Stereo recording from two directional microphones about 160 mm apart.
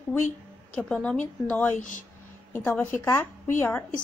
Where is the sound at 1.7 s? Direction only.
55° left (ahead or behind).